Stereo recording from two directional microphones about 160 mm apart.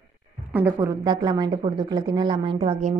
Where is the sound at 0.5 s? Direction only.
15° right (ahead or behind).